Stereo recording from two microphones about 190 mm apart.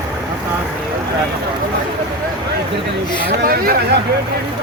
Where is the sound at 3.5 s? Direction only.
50° right (ahead or behind).